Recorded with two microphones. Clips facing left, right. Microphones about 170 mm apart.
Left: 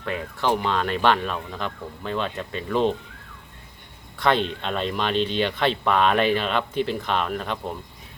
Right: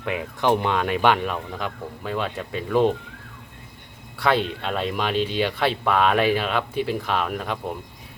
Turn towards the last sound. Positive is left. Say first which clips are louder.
# even
turn(degrees=-5)  # may be behind; listen again after turning